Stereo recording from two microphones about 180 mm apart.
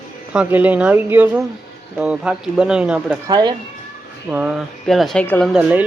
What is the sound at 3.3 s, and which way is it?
Speech, 25° right (ahead or behind).